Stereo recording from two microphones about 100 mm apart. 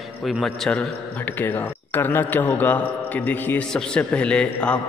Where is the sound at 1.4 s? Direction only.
20° left (ahead or behind).